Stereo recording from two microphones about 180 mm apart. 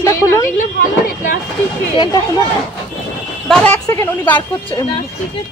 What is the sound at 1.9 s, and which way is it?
Speech, 25° left (ahead or behind).